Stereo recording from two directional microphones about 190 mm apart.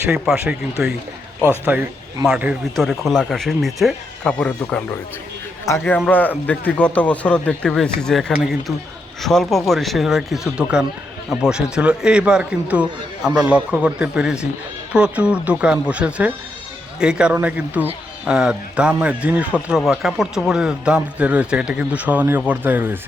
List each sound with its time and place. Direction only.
0.1 s speech: 5° right (ahead or behind)